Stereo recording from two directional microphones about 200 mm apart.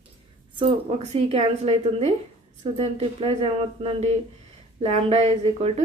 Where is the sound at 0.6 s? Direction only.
30° right (ahead or behind).